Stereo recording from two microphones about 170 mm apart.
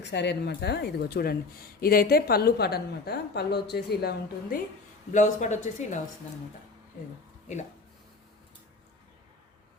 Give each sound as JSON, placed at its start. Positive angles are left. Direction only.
{"t": 0.0, "sound": "speech", "side_deg": 90}
{"t": 5.1, "sound": "speech", "side_deg": 45}